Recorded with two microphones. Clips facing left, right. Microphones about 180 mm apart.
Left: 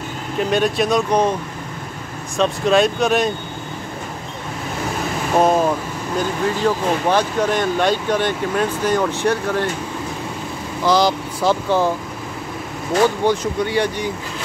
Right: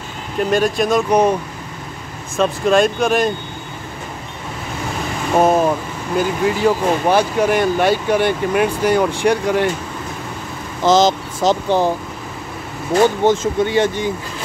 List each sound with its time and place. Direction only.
0.4 s speech: centre (ahead or behind)
2.3 s speech: centre (ahead or behind)
5.3 s speech: 5° right (ahead or behind)
10.9 s speech: 20° right (ahead or behind)
13.2 s speech: 25° right (ahead or behind)